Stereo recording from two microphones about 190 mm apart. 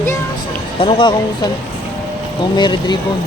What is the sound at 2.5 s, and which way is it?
Speech, 25° left (ahead or behind).